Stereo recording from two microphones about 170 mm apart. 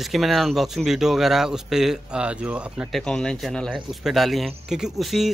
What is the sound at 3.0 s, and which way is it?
Speech, 5° left (ahead or behind).